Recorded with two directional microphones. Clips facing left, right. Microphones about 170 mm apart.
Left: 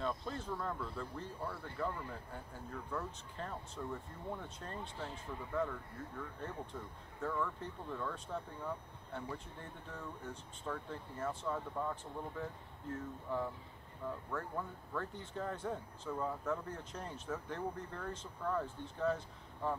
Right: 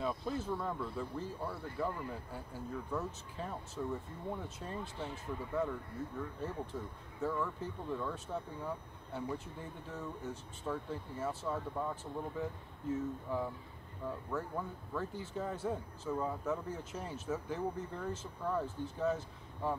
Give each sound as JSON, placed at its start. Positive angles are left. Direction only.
{"t": 0.0, "sound": "speech", "side_deg": -5}